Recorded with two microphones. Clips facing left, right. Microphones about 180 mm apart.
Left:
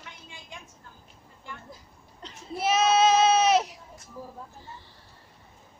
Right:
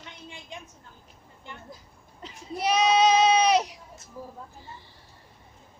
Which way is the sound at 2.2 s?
Centre (ahead or behind).